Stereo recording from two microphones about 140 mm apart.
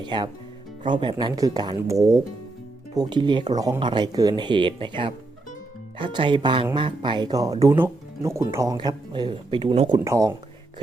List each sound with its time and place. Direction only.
0.0 s speech: 30° right (ahead or behind)
10.0 s speech: 20° right (ahead or behind)